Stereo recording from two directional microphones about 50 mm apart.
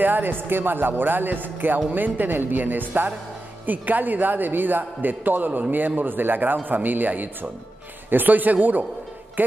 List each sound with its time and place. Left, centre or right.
0.0 s a man's voice: right